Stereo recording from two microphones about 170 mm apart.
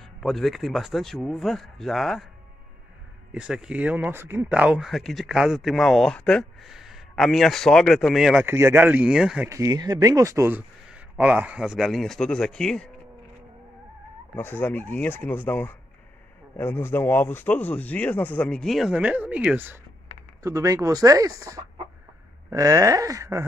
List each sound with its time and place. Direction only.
0.2 s speech: centre (ahead or behind)
3.3 s speech: 5° right (ahead or behind)
9.5 s speech: 20° right (ahead or behind); by 12.9 s 5° left (ahead or behind)
14.3 s speech: 10° left (ahead or behind); by 23.4 s 20° right (ahead or behind)